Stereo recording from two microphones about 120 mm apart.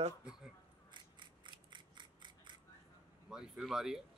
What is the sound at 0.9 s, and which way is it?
Mechanisms, 40° right (ahead or behind).